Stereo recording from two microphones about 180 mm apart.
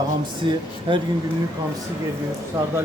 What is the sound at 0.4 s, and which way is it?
Speech, 25° right (ahead or behind).